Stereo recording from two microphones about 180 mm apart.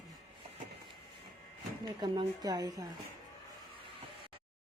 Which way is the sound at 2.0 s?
25° right (ahead or behind).